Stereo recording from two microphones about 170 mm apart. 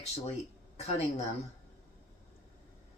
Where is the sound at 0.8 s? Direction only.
40° left (ahead or behind).